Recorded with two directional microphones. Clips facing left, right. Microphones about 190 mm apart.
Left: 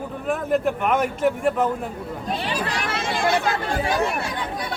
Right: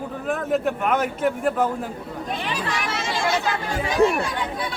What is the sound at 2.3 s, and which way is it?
Children playing, 35° left (ahead or behind).